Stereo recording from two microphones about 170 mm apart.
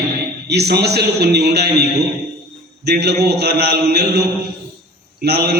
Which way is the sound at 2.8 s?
75° right (ahead or behind).